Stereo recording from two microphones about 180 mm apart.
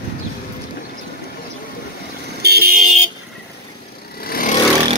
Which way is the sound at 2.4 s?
60° right (ahead or behind).